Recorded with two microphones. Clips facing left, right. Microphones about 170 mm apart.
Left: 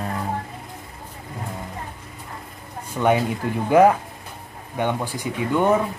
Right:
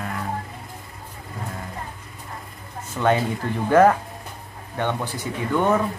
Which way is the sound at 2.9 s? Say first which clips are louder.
Left 1 dB; 15° left (ahead or behind).